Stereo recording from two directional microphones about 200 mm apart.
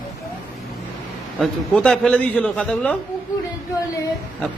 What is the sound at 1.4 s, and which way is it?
A man's voice, 5° left (ahead or behind).